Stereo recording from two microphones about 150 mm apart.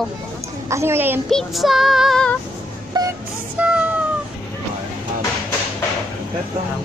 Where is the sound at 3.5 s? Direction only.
10° right (ahead or behind).